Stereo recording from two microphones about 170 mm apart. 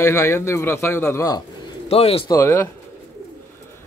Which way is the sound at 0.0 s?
15° left (ahead or behind).